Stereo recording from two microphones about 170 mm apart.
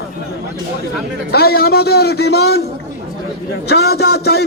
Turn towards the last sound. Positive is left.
turn(degrees=70)  # may be behind; listen again after turning